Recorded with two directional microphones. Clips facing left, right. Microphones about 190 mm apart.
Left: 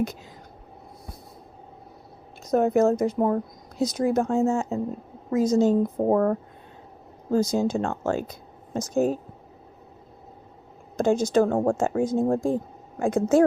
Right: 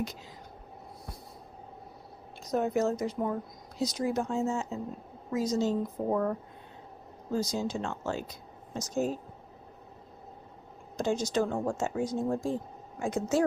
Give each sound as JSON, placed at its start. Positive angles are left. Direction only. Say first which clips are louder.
{"t": 2.4, "sound": "a woman's voice", "louder": "left 8 dB", "side_deg": 50}
{"t": 10.9, "sound": "a woman's voice", "louder": "left 8 dB", "side_deg": 50}